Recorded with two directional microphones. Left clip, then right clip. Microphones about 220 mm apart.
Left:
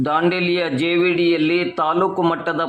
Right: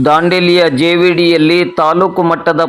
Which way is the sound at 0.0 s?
30° right (ahead or behind).